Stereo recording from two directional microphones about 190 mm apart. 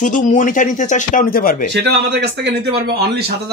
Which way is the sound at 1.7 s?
65° right (ahead or behind).